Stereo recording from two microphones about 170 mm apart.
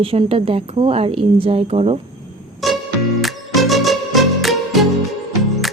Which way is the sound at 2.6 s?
Centre (ahead or behind).